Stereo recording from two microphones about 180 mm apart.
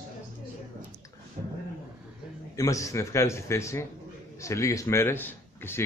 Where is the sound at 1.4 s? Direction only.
45° right (ahead or behind).